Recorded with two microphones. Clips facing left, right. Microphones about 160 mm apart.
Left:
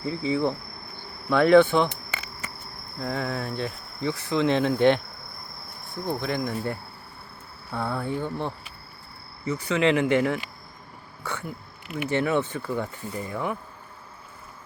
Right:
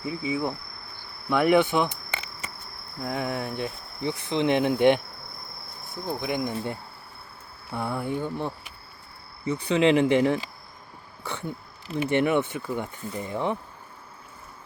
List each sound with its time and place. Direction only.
0.0 s speech: 10° right (ahead or behind)
2.0 s a sound: 30° right (ahead or behind)
3.0 s speech: 15° right (ahead or behind)
6.1 s speech: 15° right (ahead or behind)
9.5 s speech: 20° right (ahead or behind)
11.2 s a sound: 25° right (ahead or behind)
12.1 s speech: 15° right (ahead or behind)